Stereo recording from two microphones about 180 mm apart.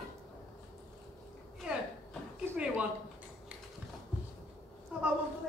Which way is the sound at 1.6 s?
5° right (ahead or behind).